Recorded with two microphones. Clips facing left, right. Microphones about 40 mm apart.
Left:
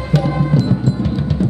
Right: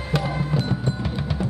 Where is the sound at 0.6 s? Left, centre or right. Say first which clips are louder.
Left 8 dB; centre.